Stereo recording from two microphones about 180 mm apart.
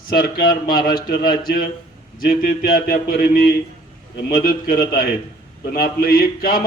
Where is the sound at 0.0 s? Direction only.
55° left (ahead or behind).